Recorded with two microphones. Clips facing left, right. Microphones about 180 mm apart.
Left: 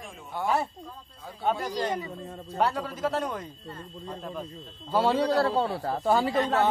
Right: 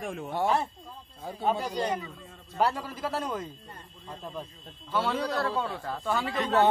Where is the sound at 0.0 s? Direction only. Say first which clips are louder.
Right 7 dB; 70° right (ahead or behind).